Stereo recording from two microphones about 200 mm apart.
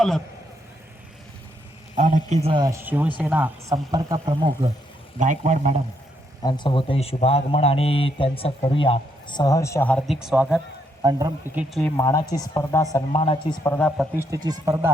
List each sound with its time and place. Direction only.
2.0 s speech: 40° right (ahead or behind)
5.2 s a man's voice: 40° right (ahead or behind)
6.4 s a man's voice: 20° left (ahead or behind); by 10.6 s 5° right (ahead or behind)
11.0 s speech: 20° right (ahead or behind)
11.8 s a man's voice: 10° left (ahead or behind)
13.7 s speech: centre (ahead or behind)
14.2 s speech: 15° right (ahead or behind)